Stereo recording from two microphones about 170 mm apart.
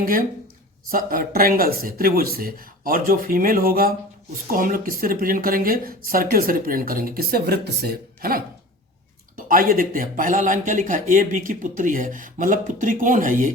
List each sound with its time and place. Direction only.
0.0 s speech: 55° right (ahead or behind)